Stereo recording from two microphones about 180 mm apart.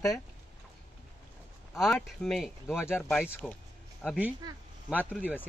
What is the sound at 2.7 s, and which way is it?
Speech, 15° left (ahead or behind).